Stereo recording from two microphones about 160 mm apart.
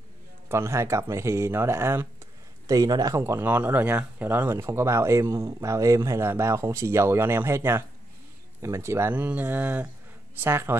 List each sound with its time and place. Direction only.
0.5 s speech: 15° right (ahead or behind)